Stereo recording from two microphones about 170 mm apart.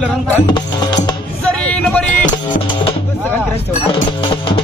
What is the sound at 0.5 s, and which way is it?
Music, 25° left (ahead or behind).